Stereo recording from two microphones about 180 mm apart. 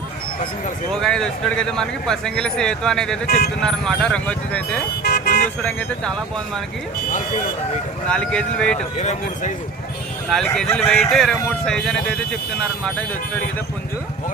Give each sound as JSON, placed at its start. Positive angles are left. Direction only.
{"t": 0.9, "sound": "speech", "side_deg": 5}
{"t": 3.2, "sound": "speech", "side_deg": 60}
{"t": 3.6, "sound": "speech", "side_deg": 5}
{"t": 5.0, "sound": "toot", "side_deg": 65}
{"t": 8.0, "sound": "speech", "side_deg": 5}
{"t": 9.0, "sound": "speech", "side_deg": 40}
{"t": 10.8, "sound": "speech", "side_deg": 0}